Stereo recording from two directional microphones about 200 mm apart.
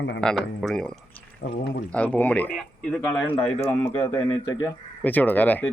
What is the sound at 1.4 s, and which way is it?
Speech, 55° left (ahead or behind).